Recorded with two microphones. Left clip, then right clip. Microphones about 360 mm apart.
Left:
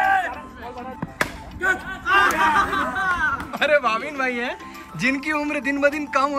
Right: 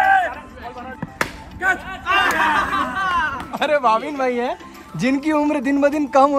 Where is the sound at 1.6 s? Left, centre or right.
Centre.